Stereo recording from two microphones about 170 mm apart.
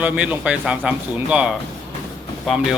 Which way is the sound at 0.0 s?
10° right (ahead or behind).